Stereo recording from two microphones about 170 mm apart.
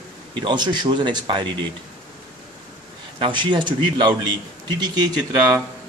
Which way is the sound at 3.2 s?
30° right (ahead or behind).